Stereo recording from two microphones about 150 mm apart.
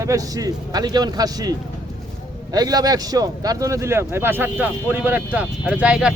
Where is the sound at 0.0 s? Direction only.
20° right (ahead or behind).